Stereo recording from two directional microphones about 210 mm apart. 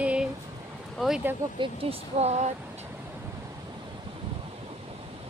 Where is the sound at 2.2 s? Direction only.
30° right (ahead or behind).